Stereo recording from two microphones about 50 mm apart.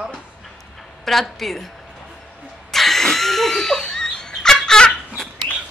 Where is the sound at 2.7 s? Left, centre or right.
Centre.